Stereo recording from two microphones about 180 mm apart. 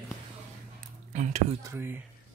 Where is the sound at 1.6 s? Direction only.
15° right (ahead or behind).